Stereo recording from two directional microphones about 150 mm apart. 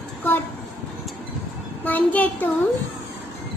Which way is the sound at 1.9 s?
10° left (ahead or behind).